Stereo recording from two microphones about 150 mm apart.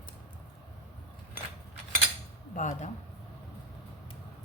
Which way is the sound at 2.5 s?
55° left (ahead or behind).